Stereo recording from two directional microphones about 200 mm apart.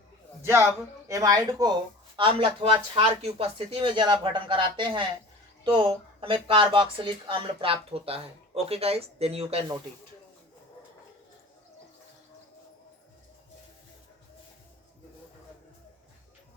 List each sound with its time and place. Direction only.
1.0 s speech: 15° right (ahead or behind)